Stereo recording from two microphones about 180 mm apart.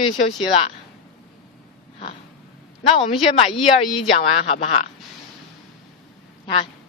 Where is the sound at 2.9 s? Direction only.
30° left (ahead or behind).